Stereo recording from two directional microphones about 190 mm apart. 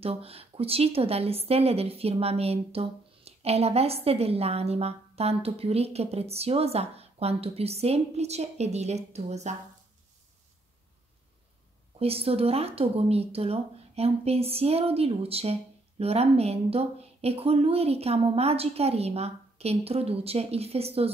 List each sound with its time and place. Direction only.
0.0 s a woman's voice: 30° right (ahead or behind)
12.0 s a woman's voice: 30° right (ahead or behind)